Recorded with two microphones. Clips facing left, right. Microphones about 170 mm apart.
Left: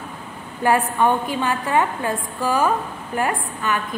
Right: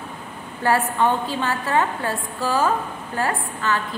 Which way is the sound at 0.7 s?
15° left (ahead or behind).